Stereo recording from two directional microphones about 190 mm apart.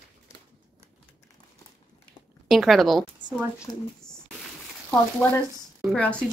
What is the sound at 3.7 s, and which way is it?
Speech, 20° left (ahead or behind).